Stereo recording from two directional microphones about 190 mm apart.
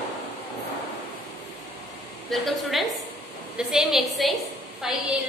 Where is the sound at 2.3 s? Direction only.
Centre (ahead or behind).